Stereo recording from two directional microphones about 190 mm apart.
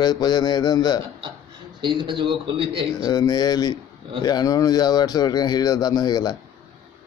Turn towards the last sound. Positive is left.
turn(degrees=20)  # may be behind; listen again after turning